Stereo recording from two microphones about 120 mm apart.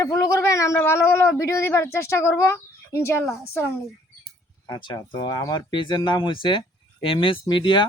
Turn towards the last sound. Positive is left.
turn(degrees=40)  # may be behind; listen again after turning